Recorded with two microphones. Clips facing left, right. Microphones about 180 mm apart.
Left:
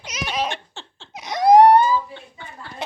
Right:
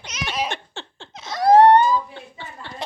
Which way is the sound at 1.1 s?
20° left (ahead or behind).